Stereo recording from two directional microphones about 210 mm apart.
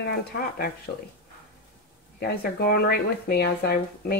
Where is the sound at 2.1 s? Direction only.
50° left (ahead or behind).